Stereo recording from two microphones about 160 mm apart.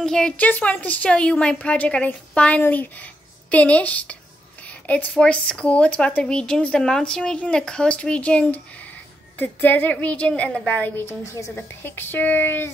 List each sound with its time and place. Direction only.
0.0 s a woman's voice: 5° left (ahead or behind)